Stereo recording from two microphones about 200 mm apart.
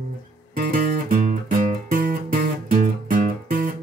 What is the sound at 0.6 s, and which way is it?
Music, 45° right (ahead or behind).